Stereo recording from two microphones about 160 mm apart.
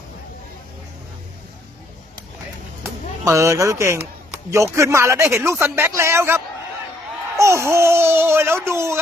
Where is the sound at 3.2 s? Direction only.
20° right (ahead or behind).